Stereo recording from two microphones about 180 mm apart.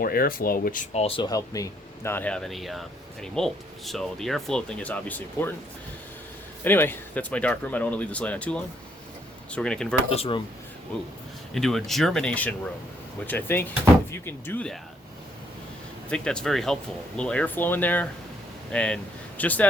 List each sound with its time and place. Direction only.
0.0 s speech: 55° left (ahead or behind)
1.0 s speech: 25° left (ahead or behind); by 5.5 s 10° left (ahead or behind)
6.7 s speech: 10° left (ahead or behind)
10.1 s speech: 30° left (ahead or behind)
11.5 s speech: centre (ahead or behind)
16.0 s speech: 5° left (ahead or behind)